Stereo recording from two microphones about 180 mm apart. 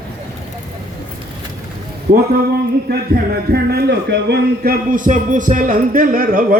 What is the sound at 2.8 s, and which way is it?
A man's voice, 60° right (ahead or behind).